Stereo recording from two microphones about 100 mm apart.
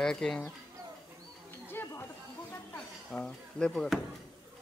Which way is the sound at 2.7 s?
10° left (ahead or behind).